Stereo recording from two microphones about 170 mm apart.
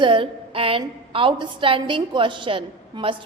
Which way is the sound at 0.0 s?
30° right (ahead or behind).